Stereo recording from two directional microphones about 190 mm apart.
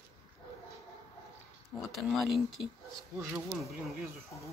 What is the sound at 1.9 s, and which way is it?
Speech, centre (ahead or behind).